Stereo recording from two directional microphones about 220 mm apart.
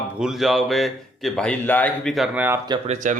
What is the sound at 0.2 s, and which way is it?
Speech, centre (ahead or behind).